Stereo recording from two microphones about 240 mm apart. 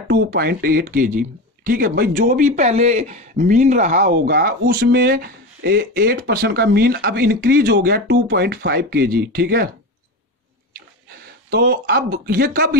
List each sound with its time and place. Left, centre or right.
0.1 s speech: right
11.5 s speech: right